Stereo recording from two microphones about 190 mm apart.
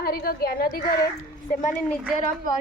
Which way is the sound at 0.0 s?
50° left (ahead or behind).